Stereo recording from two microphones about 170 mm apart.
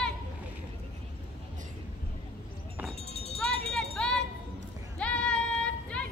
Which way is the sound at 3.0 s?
40° left (ahead or behind).